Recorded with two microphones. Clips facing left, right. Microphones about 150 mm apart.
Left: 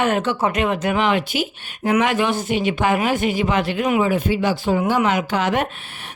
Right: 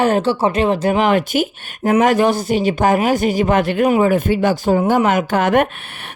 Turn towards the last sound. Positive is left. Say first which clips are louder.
# right 3 dB
turn(degrees=-60)  # may be behind; listen again after turning